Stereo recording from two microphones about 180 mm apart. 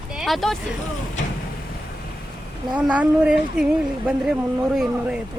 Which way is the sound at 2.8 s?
5° right (ahead or behind).